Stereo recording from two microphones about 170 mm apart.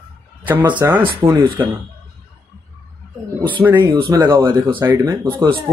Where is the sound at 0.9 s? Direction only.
30° right (ahead or behind).